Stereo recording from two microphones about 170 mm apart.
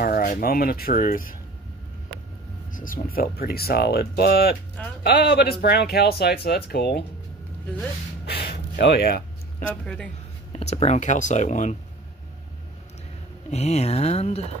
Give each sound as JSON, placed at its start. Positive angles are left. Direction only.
{"t": 0.0, "sound": "speech", "side_deg": 55}
{"t": 2.7, "sound": "speech", "side_deg": 55}
{"t": 8.3, "sound": "a sound", "side_deg": 70}
{"t": 10.5, "sound": "speech", "side_deg": 40}
{"t": 13.5, "sound": "speech", "side_deg": 40}